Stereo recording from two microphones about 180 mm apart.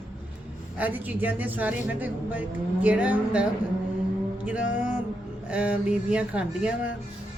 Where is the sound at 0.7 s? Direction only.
10° right (ahead or behind).